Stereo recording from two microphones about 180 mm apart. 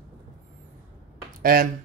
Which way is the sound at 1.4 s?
55° right (ahead or behind).